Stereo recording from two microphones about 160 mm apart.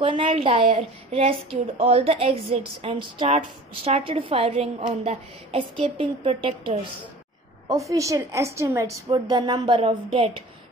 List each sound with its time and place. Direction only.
0.0 s a woman's voice: 30° right (ahead or behind)
7.6 s a woman's voice: 20° right (ahead or behind)